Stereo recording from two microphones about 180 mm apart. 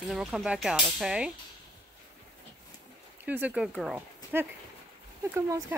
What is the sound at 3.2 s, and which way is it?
Speech, 10° right (ahead or behind).